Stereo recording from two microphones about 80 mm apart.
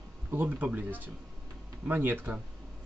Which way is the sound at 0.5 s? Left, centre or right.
Centre.